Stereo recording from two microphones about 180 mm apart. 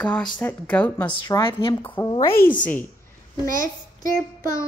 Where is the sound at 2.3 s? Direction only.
50° left (ahead or behind).